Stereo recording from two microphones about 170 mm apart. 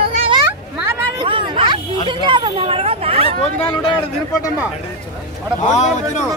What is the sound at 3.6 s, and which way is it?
Speech, 30° left (ahead or behind).